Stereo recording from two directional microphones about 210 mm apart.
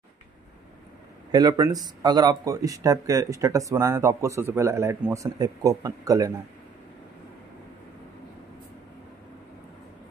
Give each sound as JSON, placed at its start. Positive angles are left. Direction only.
{"t": 1.3, "sound": "speech", "side_deg": -20}